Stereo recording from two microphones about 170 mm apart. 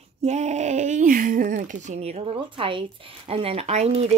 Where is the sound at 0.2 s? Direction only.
40° right (ahead or behind).